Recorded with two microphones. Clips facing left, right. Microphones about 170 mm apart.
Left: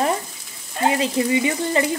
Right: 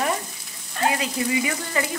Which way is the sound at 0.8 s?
25° left (ahead or behind).